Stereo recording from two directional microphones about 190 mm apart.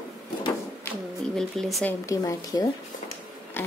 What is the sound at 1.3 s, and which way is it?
Speech, centre (ahead or behind).